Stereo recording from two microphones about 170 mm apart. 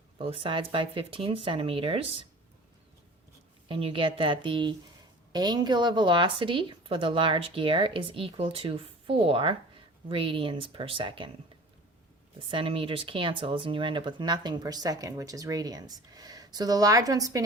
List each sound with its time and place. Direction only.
0.2 s a woman's voice: 30° right (ahead or behind)
3.7 s a woman's voice: 30° right (ahead or behind)
12.5 s speech: 30° right (ahead or behind)